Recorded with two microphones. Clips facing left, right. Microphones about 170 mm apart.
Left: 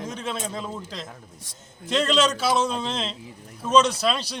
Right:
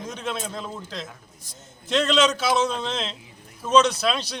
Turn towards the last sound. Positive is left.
turn(degrees=5)  # may be behind; listen again after turning